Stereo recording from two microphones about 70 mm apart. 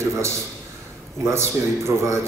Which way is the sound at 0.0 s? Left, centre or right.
Right.